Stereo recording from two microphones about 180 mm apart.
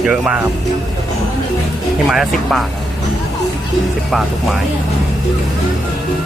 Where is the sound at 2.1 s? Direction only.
Centre (ahead or behind).